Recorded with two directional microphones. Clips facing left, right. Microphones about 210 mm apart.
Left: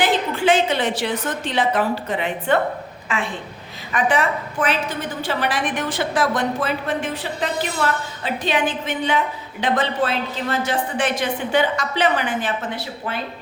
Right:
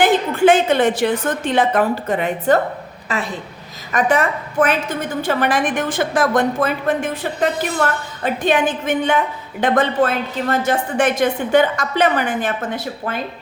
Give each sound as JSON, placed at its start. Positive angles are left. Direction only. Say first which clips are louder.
{"t": 0.0, "sound": "a woman's voice", "louder": "right 5 dB", "side_deg": -50}